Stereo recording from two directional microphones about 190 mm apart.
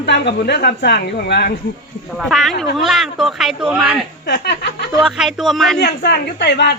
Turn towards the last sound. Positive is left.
turn(degrees=60)  # may be behind; listen again after turning